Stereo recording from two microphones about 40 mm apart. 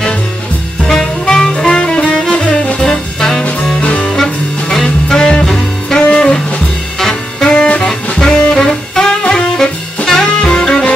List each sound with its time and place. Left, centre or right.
0.8 s saxophone: centre
1.5 s music: centre
2.8 s music: centre
3.8 s music: left
4.2 s music: centre
5.9 s music: left
7.0 s saxophone: centre
7.4 s saxophone: left
10.0 s music: centre